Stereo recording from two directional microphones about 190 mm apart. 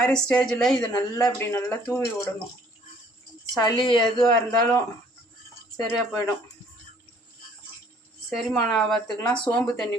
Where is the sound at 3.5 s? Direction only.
20° left (ahead or behind).